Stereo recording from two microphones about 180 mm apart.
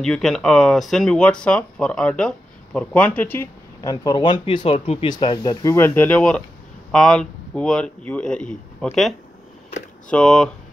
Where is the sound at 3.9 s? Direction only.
25° left (ahead or behind).